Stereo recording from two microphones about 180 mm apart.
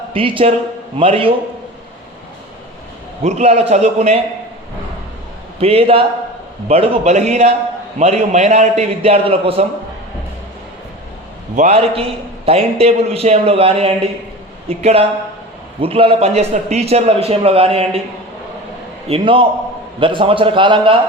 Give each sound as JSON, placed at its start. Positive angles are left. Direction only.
{"t": 0.1, "sound": "a man's voice", "side_deg": -30}
{"t": 3.2, "sound": "a man's voice", "side_deg": -35}
{"t": 5.5, "sound": "a man's voice", "side_deg": -35}
{"t": 11.5, "sound": "a man's voice", "side_deg": -40}
{"t": 19.0, "sound": "a man's voice", "side_deg": -30}